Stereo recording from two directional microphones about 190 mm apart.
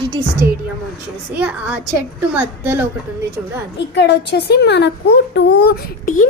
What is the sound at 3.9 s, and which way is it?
A woman's voice, 65° left (ahead or behind).